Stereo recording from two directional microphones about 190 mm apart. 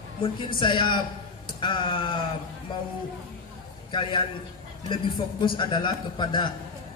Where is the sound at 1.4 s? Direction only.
25° left (ahead or behind).